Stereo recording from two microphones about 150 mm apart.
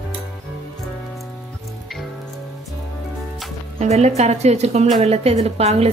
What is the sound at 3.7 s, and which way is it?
Speech, 45° right (ahead or behind).